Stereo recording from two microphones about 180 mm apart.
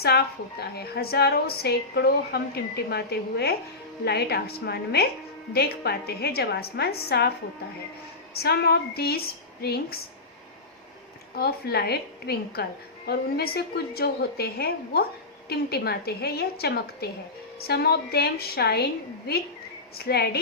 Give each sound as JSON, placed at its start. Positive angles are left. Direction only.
{"t": 0.0, "sound": "a woman's voice", "side_deg": 60}
{"t": 8.3, "sound": "a woman's voice", "side_deg": 60}
{"t": 11.3, "sound": "a woman's voice", "side_deg": 60}
{"t": 20.1, "sound": "a woman's voice", "side_deg": 60}